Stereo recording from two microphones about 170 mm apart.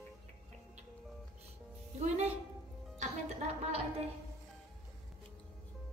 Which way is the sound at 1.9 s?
40° right (ahead or behind).